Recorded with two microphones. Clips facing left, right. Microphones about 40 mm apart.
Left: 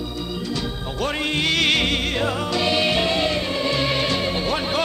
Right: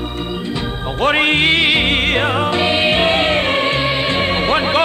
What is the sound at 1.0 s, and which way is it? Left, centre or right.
Music, right.